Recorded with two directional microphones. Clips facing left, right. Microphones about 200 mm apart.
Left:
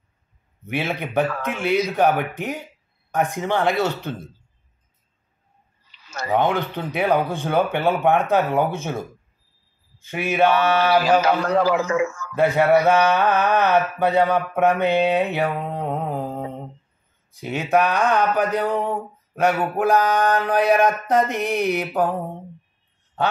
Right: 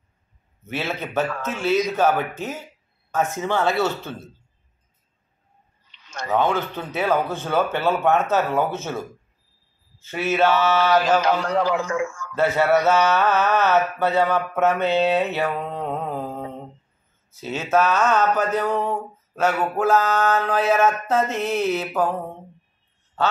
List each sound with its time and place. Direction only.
0.7 s a man's voice: 15° left (ahead or behind)
5.9 s a sound: 5° left (ahead or behind)
6.3 s a man's voice: 15° left (ahead or behind)